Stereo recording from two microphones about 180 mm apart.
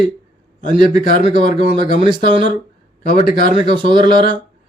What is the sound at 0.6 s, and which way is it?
A man's voice, 45° left (ahead or behind).